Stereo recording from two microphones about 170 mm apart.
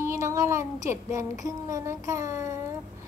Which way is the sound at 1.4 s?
20° right (ahead or behind).